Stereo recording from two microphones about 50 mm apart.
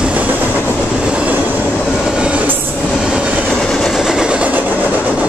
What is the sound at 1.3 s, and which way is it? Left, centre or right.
Train, right.